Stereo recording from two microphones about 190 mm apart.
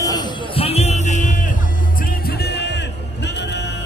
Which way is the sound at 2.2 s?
60° left (ahead or behind).